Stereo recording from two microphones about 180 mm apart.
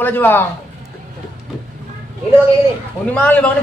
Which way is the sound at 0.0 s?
10° left (ahead or behind).